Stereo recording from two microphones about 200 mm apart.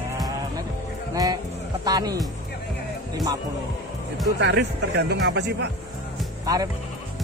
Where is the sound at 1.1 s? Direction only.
15° right (ahead or behind).